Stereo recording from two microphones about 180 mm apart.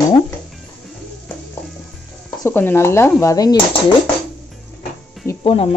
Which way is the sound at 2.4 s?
10° left (ahead or behind).